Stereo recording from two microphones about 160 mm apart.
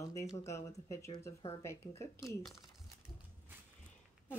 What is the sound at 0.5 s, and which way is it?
A woman's voice, 20° left (ahead or behind).